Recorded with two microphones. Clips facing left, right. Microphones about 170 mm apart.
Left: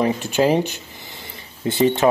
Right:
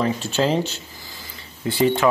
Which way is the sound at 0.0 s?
15° left (ahead or behind).